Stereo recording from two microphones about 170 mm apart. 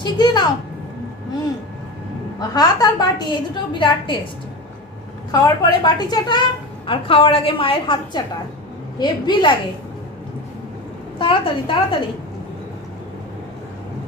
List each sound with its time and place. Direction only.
0.0 s a woman's voice: 25° left (ahead or behind)
2.5 s a woman's voice: 25° left (ahead or behind)
5.3 s a woman's voice: 25° left (ahead or behind)
11.1 s a woman's voice: 30° left (ahead or behind)